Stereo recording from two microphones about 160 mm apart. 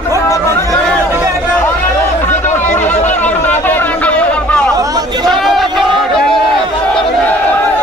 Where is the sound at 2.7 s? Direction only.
10° left (ahead or behind).